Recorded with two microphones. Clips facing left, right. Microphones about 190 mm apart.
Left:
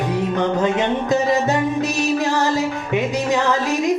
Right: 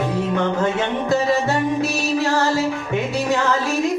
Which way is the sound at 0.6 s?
20° left (ahead or behind).